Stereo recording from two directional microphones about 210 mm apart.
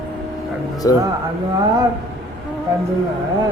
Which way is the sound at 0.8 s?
15° left (ahead or behind).